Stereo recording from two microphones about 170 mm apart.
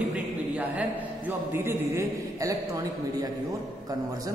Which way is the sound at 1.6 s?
15° right (ahead or behind).